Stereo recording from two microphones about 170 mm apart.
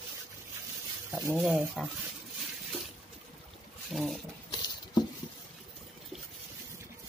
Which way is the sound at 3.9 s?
Centre (ahead or behind).